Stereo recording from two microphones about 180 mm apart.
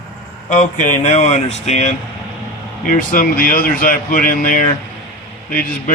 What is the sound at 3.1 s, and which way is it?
Speech, 50° left (ahead or behind).